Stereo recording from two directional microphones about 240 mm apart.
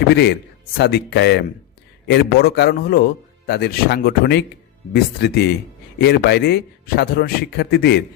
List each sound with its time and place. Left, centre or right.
0.1 s speech: left